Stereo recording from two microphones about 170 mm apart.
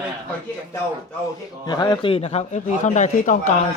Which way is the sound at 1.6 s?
25° left (ahead or behind).